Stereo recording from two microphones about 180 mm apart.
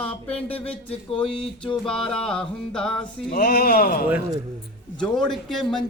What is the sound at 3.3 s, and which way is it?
Speech, 55° left (ahead or behind).